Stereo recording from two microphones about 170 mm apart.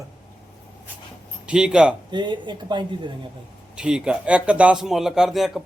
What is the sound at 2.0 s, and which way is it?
Speech, 25° right (ahead or behind).